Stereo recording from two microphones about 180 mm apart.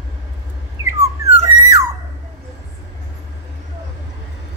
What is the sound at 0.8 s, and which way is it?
Dog, 15° right (ahead or behind).